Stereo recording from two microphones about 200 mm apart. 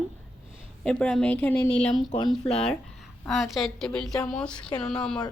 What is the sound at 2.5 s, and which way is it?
A woman's voice, 5° left (ahead or behind).